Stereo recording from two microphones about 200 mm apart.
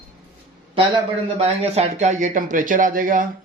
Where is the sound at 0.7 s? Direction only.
30° right (ahead or behind).